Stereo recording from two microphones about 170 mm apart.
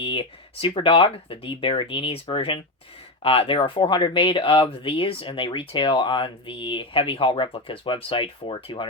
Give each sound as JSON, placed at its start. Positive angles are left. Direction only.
{"t": 0.0, "sound": "speech", "side_deg": 30}